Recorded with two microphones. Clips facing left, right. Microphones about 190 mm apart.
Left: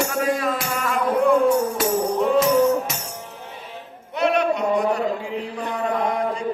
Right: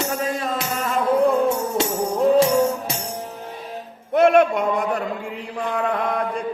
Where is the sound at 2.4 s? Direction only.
30° right (ahead or behind).